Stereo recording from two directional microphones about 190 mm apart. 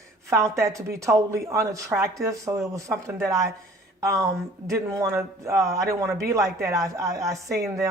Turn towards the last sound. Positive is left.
turn(degrees=-15)  # may be behind; listen again after turning